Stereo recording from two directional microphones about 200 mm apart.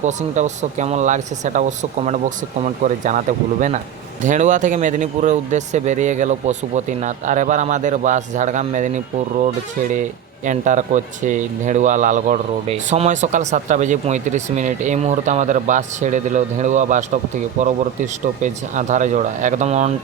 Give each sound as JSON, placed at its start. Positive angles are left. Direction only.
{"t": 0.0, "sound": "speech", "side_deg": -35}